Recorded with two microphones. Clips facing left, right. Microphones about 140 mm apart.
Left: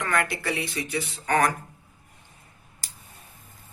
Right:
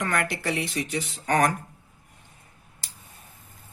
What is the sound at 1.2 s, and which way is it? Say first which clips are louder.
Speech: right 1 dB; 35° right (ahead or behind).